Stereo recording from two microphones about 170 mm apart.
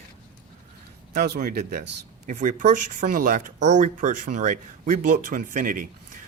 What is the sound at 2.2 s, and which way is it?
Speech, 50° right (ahead or behind).